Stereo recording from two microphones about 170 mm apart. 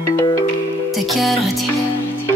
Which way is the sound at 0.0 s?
15° left (ahead or behind).